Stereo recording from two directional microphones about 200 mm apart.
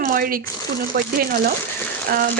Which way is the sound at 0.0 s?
45° right (ahead or behind).